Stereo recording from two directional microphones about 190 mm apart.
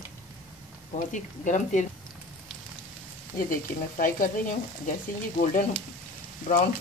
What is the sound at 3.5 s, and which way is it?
Speech, 45° left (ahead or behind).